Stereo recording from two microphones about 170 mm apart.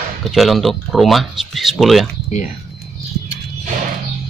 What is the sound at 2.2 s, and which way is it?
Speech, 45° left (ahead or behind).